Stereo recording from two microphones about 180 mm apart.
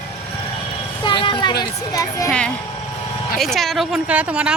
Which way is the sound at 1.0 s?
25° left (ahead or behind).